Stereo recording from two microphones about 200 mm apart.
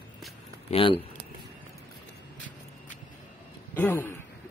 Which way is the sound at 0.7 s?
25° left (ahead or behind).